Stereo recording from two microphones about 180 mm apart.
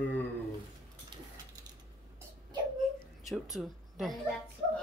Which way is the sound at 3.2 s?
Centre (ahead or behind).